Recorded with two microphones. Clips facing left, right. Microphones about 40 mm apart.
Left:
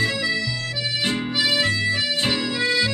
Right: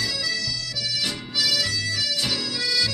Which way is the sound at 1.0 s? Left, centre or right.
Left.